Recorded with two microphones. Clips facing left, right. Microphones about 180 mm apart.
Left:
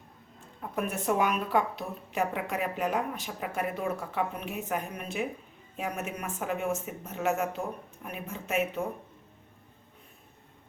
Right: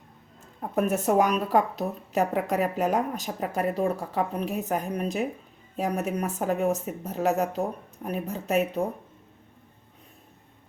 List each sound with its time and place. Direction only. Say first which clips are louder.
0.6 s a woman's voice: right 7 dB; 40° right (ahead or behind)